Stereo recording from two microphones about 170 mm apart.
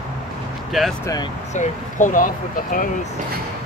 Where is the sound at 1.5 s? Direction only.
45° left (ahead or behind).